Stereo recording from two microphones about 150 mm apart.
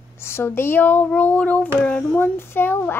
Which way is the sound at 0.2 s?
15° left (ahead or behind).